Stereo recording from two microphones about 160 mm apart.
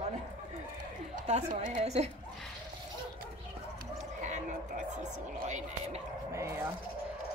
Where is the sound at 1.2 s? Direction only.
50° right (ahead or behind).